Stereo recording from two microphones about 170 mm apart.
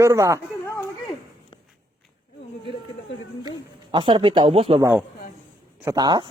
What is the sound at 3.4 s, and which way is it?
Speech, 30° right (ahead or behind).